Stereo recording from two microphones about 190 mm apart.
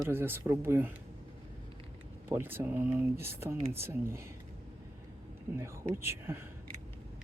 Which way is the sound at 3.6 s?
30° right (ahead or behind).